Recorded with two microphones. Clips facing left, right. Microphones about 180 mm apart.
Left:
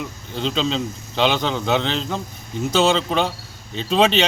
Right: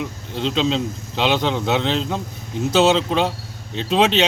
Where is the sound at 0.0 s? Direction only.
Centre (ahead or behind).